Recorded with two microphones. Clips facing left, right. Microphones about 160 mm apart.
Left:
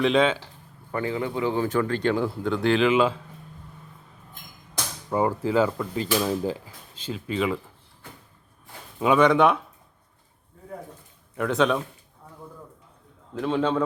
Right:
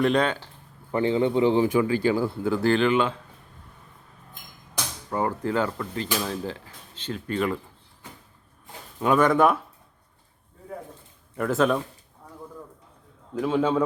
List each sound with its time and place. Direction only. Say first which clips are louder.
0.0 s speech: left 1 dB; centre (ahead or behind)
0.9 s speech: right 5 dB; 20° right (ahead or behind)
1.6 s speech: right 2 dB; 10° right (ahead or behind); by 3.2 s 5° left (ahead or behind)
5.1 s speech: left 3 dB; 10° left (ahead or behind)
9.0 s speech: left 1 dB; centre (ahead or behind)
11.3 s speech: even; centre (ahead or behind)
13.3 s a man's voice: right 1 dB; 5° right (ahead or behind)